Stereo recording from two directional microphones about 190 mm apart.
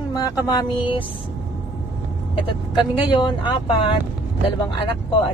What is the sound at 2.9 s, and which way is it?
Speech, 25° left (ahead or behind).